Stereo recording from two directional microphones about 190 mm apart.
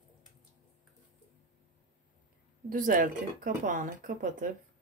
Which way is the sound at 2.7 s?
45° right (ahead or behind).